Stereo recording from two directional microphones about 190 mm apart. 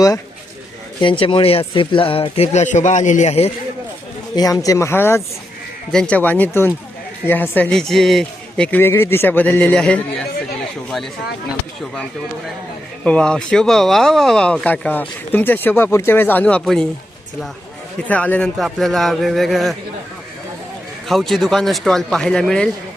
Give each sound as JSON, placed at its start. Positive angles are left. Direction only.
{"t": 1.0, "sound": "speech", "side_deg": 25}
{"t": 4.4, "sound": "speech", "side_deg": 20}
{"t": 13.1, "sound": "speech", "side_deg": 5}
{"t": 18.1, "sound": "a man's voice", "side_deg": 5}
{"t": 21.1, "sound": "a man's voice", "side_deg": 0}